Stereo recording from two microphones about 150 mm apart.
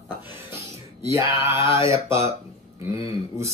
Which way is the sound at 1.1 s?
20° right (ahead or behind).